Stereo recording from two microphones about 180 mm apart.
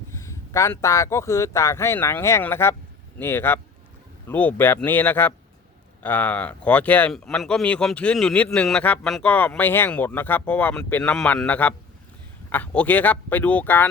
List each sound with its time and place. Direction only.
0.1 s speech: 15° left (ahead or behind)